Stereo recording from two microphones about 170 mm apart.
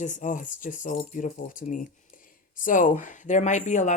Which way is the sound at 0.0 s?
45° left (ahead or behind).